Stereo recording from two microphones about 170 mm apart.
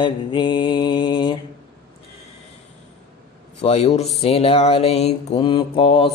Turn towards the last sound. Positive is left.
turn(degrees=30)  # may be behind; listen again after turning